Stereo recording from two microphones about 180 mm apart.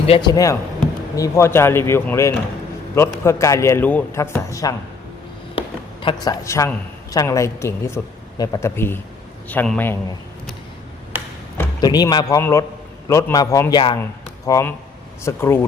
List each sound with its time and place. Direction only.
0.1 s a man's voice: 25° left (ahead or behind)
5.5 s a woman's voice: 30° left (ahead or behind); by 10.0 s 10° left (ahead or behind)
11.8 s a man's voice: 20° left (ahead or behind)